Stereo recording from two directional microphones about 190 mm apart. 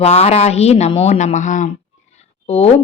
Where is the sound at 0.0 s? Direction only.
35° left (ahead or behind).